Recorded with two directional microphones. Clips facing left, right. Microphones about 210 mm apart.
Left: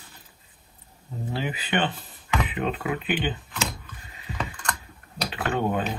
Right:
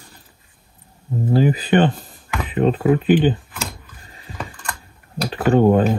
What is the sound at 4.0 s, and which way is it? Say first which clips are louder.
Mechanisms: left 1 dB; 40° right (ahead or behind).